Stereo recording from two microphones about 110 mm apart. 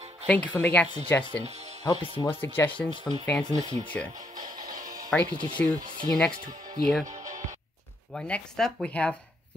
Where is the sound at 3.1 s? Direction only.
Centre (ahead or behind).